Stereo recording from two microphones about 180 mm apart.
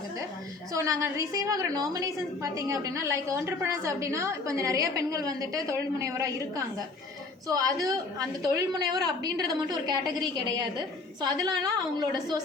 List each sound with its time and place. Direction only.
0.7 s a woman's voice: 15° right (ahead or behind)
7.4 s a woman's voice: 20° right (ahead or behind)